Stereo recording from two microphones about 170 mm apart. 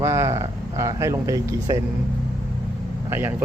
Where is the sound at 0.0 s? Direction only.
15° right (ahead or behind).